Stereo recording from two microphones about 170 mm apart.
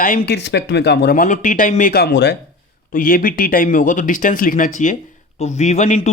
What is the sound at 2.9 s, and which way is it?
Speech, 55° left (ahead or behind).